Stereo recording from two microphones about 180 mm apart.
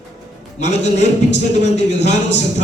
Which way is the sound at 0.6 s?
40° left (ahead or behind).